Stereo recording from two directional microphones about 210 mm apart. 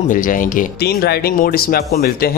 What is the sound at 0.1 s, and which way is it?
Speech, 40° left (ahead or behind).